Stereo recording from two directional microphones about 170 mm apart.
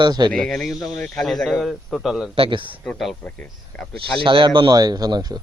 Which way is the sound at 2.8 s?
Centre (ahead or behind).